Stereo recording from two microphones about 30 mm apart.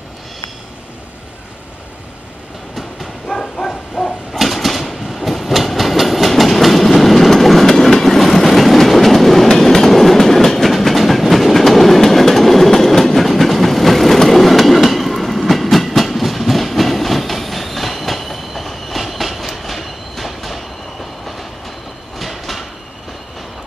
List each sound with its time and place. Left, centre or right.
3.3 s bow-wow: centre
4.3 s train: centre
7.6 s train: centre
22.2 s train: centre